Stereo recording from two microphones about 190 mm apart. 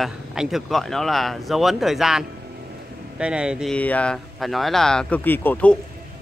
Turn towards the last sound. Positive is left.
turn(degrees=5)  # may be behind; listen again after turning